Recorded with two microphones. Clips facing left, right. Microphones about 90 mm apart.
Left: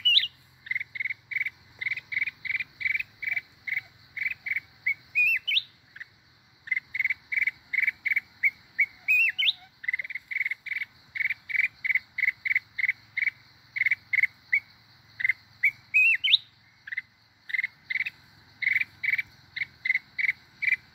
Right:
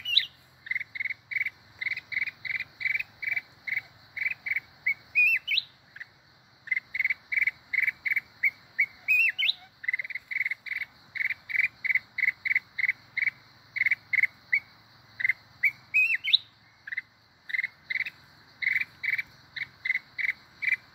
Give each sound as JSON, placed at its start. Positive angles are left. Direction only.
{"t": 0.1, "sound": "cricket", "side_deg": -15}
{"t": 15.1, "sound": "bird", "side_deg": -10}
{"t": 16.9, "sound": "cricket", "side_deg": -5}
{"t": 19.6, "sound": "insect", "side_deg": -30}